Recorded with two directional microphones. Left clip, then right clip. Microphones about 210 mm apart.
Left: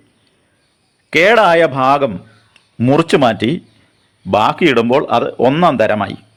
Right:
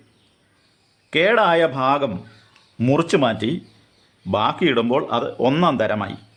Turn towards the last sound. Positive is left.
turn(degrees=20)  # may be behind; listen again after turning